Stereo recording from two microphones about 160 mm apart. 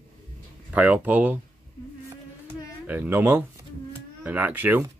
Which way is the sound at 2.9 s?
10° right (ahead or behind).